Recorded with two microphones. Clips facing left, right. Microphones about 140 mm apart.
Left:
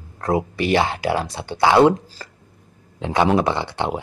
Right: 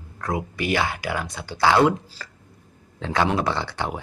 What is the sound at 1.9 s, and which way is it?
Speech, 40° left (ahead or behind).